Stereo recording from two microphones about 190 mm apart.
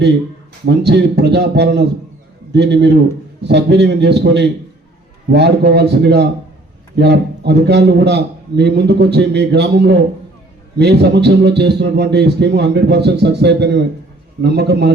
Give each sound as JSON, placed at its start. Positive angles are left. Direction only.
{"t": 0.6, "sound": "a man's voice", "side_deg": -60}